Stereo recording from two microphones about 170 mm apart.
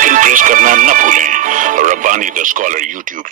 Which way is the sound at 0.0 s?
50° right (ahead or behind).